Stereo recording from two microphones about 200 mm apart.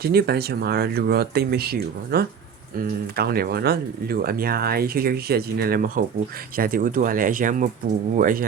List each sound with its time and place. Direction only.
0.0 s speech: 50° right (ahead or behind)